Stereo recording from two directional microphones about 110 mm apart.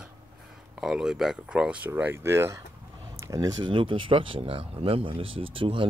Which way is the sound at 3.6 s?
50° right (ahead or behind).